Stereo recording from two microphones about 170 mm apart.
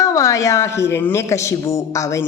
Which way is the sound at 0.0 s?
20° left (ahead or behind).